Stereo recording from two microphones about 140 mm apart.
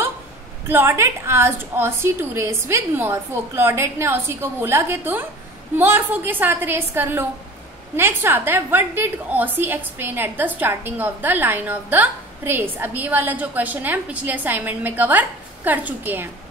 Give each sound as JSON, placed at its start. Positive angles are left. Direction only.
{"t": 0.7, "sound": "a woman's voice", "side_deg": -15}